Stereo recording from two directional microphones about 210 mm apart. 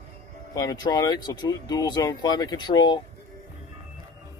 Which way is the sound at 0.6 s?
20° left (ahead or behind).